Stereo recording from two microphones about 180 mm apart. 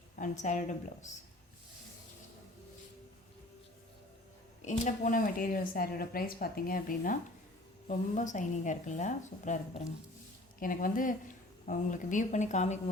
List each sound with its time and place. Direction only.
0.2 s speech: 45° left (ahead or behind)
4.6 s speech: 45° left (ahead or behind)